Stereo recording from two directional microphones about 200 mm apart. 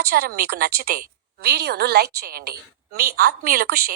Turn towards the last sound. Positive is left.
turn(degrees=-50)  # may be behind; listen again after turning